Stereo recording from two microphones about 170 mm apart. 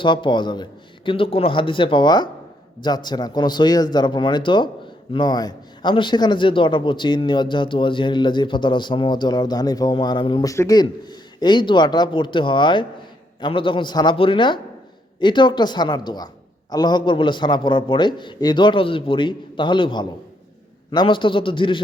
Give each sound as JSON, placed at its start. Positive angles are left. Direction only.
{"t": 0.0, "sound": "a man's voice", "side_deg": 30}